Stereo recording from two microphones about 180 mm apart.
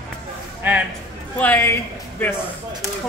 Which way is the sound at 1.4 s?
10° left (ahead or behind).